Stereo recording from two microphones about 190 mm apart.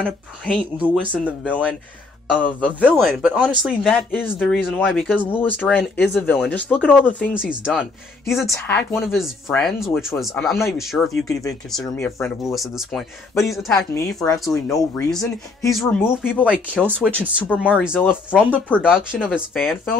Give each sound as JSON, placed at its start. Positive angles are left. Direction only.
{"t": 0.0, "sound": "speech", "side_deg": 0}
{"t": 2.8, "sound": "speech", "side_deg": -5}
{"t": 7.3, "sound": "speech", "side_deg": -5}
{"t": 8.6, "sound": "speech", "side_deg": 10}
{"t": 11.0, "sound": "speech", "side_deg": 15}
{"t": 12.4, "sound": "speech", "side_deg": 0}
{"t": 13.9, "sound": "speech", "side_deg": 15}
{"t": 16.4, "sound": "speech", "side_deg": -5}
{"t": 17.5, "sound": "speech", "side_deg": 5}
{"t": 17.8, "sound": "speech", "side_deg": -5}